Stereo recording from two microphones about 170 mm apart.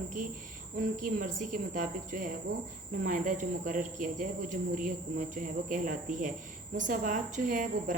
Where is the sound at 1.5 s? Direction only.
50° right (ahead or behind).